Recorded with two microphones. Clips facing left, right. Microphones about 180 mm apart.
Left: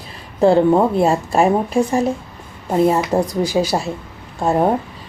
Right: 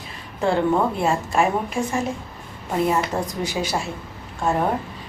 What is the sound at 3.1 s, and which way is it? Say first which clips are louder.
Speech: left 8 dB; 35° left (ahead or behind).